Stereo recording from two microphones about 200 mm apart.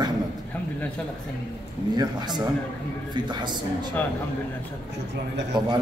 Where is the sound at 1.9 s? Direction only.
20° right (ahead or behind).